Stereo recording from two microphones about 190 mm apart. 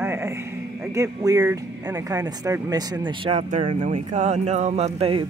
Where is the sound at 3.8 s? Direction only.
35° right (ahead or behind).